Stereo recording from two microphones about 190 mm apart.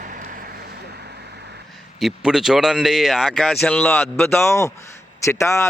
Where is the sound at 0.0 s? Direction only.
45° right (ahead or behind).